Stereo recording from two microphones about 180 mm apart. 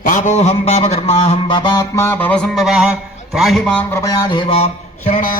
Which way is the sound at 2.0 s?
10° left (ahead or behind).